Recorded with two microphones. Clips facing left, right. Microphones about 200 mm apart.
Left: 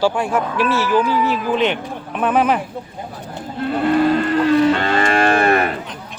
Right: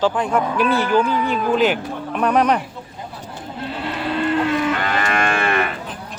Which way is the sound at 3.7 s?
50° left (ahead or behind).